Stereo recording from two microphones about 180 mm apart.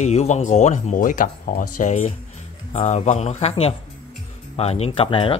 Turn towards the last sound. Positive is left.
turn(degrees=30)  # may be behind; listen again after turning